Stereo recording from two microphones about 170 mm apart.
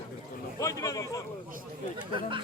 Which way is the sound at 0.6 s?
20° left (ahead or behind).